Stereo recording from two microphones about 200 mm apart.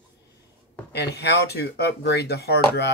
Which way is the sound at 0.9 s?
55° left (ahead or behind).